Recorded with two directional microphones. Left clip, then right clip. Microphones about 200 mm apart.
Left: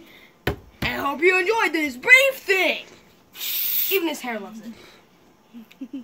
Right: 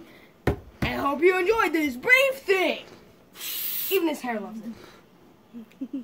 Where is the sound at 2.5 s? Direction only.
Centre (ahead or behind).